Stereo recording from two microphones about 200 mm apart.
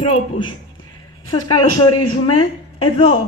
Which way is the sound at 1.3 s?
25° left (ahead or behind).